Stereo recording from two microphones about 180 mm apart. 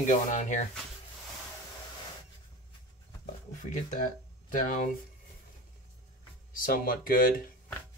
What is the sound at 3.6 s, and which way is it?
Speech, 45° left (ahead or behind).